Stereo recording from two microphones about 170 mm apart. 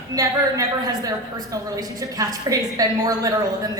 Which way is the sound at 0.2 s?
20° right (ahead or behind).